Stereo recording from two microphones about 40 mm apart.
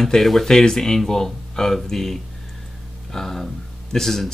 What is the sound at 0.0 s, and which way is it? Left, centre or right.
Speech, centre.